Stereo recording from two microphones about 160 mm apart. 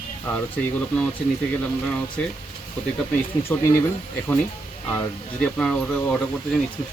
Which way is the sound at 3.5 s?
15° left (ahead or behind).